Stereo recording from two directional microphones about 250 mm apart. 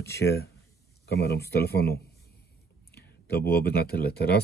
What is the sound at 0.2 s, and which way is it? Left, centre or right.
A man's voice, left.